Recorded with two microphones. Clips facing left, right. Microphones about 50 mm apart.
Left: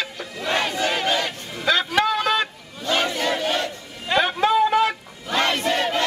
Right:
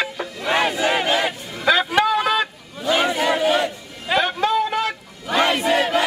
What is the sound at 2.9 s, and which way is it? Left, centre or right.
Crowd, centre.